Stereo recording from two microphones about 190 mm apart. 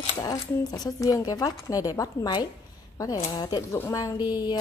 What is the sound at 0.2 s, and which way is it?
A woman's voice, 20° left (ahead or behind).